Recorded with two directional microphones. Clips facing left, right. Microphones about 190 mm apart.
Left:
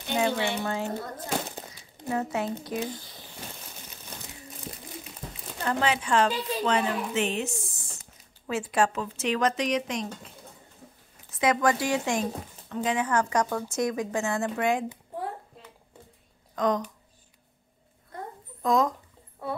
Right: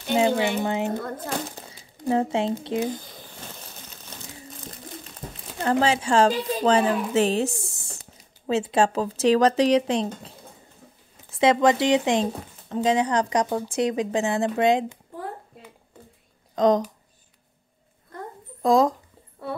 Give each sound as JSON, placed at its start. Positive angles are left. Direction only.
{"t": 0.3, "sound": "speech", "side_deg": -45}
{"t": 0.7, "sound": "speech", "side_deg": -20}
{"t": 2.0, "sound": "speech", "side_deg": -25}
{"t": 5.2, "sound": "a sound", "side_deg": -15}
{"t": 5.6, "sound": "a woman's voice", "side_deg": -30}
{"t": 11.3, "sound": "speech", "side_deg": -25}
{"t": 13.9, "sound": "speech", "side_deg": -15}
{"t": 16.5, "sound": "speech", "side_deg": -25}
{"t": 18.6, "sound": "speech", "side_deg": -30}